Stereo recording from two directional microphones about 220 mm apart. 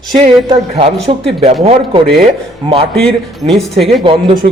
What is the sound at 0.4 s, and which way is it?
Speech, 25° right (ahead or behind).